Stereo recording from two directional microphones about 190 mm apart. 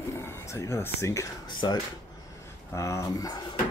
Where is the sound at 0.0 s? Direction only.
15° left (ahead or behind).